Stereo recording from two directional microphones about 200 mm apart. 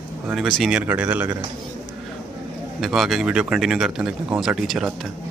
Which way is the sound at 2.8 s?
Centre (ahead or behind).